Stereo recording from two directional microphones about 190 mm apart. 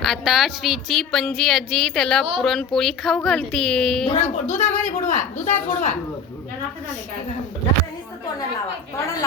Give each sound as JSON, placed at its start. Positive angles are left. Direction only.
{"t": 0.0, "sound": "a woman's voice", "side_deg": 0}
{"t": 4.1, "sound": "a woman's voice", "side_deg": 40}